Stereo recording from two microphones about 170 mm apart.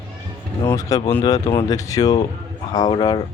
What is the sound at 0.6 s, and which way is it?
Speech, 20° left (ahead or behind).